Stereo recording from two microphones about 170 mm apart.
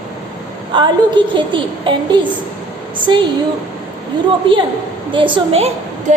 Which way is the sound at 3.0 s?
30° right (ahead or behind).